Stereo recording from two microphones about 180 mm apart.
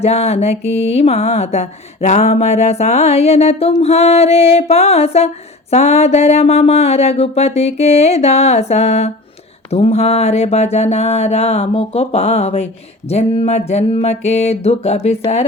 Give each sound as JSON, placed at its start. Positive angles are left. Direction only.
{"t": 0.0, "sound": "mantra", "side_deg": 35}